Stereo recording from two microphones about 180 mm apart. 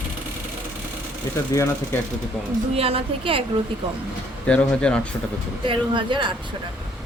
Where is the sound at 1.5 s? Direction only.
15° left (ahead or behind).